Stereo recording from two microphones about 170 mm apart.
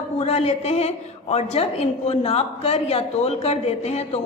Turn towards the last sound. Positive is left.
turn(degrees=40)  # may be behind; listen again after turning